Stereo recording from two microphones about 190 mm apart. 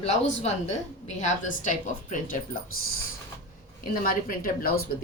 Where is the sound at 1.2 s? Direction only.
40° left (ahead or behind).